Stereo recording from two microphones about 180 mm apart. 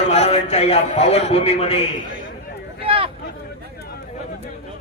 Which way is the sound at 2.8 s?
30° right (ahead or behind).